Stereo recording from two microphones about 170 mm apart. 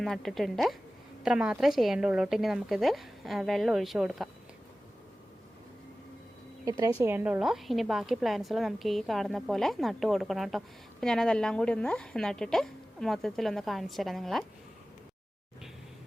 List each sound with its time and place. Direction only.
0.0 s a woman's voice: centre (ahead or behind)
6.7 s a woman's voice: 20° right (ahead or behind)
7.0 s a woman's voice: 10° right (ahead or behind)